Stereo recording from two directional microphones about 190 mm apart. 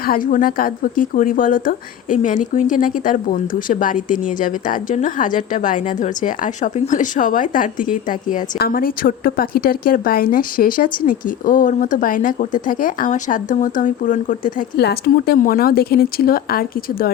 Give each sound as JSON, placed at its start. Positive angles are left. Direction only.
{"t": 0.0, "sound": "speech", "side_deg": 50}
{"t": 14.8, "sound": "speech", "side_deg": 55}